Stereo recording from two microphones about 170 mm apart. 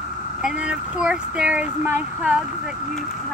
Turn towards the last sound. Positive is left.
turn(degrees=-10)  # may be behind; listen again after turning